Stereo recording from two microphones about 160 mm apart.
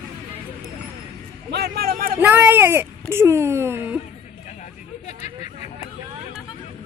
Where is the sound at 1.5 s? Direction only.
85° right; by 2.2 s 65° right (ahead or behind).